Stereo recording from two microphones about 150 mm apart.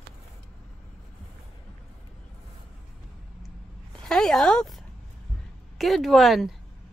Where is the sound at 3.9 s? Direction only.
5° left (ahead or behind).